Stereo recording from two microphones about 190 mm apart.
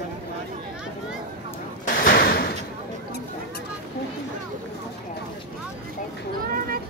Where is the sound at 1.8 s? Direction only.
50° left (ahead or behind).